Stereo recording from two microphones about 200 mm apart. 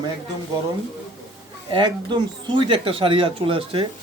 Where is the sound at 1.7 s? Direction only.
25° right (ahead or behind).